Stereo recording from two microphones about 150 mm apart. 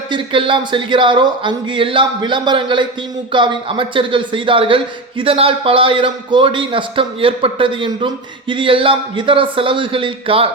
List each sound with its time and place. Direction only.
0.1 s speech: 35° right (ahead or behind)